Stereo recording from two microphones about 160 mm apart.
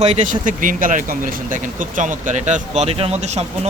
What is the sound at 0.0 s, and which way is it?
Speech, 45° right (ahead or behind).